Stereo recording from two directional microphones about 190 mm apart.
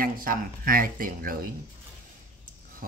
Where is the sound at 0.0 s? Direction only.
50° right (ahead or behind).